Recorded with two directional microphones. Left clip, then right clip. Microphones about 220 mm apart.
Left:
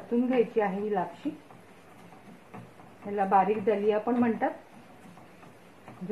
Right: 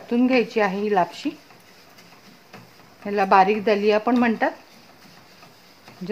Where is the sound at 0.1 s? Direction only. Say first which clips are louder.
Right 6 dB; 55° right (ahead or behind).